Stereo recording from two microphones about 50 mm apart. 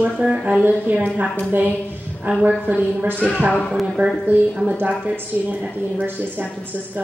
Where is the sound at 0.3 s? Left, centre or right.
Right.